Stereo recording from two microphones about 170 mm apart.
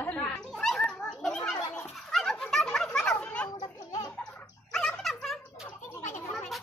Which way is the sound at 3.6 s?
25° left (ahead or behind).